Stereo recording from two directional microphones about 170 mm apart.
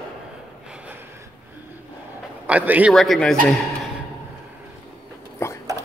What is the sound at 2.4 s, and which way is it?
A man's voice, 10° right (ahead or behind).